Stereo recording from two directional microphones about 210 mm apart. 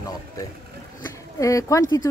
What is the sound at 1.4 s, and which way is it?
Speech, 15° left (ahead or behind).